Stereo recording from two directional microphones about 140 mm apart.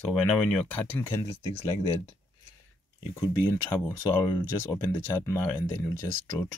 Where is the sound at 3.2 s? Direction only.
15° left (ahead or behind).